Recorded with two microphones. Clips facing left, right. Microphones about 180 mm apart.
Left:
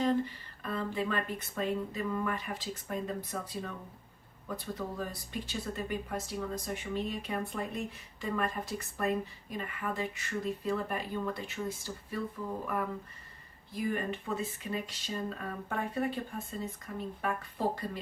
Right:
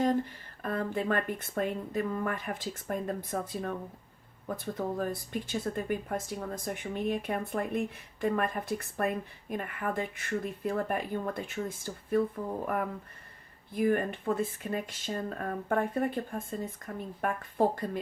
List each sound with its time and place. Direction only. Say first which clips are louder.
0.0 s speech: right 2 dB; 50° right (ahead or behind)
13.7 s speech: right 6 dB; 55° right (ahead or behind)